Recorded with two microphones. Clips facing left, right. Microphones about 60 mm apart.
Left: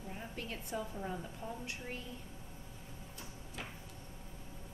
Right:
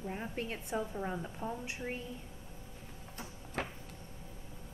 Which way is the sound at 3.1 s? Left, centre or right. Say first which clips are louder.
Right 9 dB; right.